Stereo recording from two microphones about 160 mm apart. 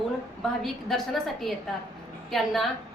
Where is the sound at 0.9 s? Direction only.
Centre (ahead or behind).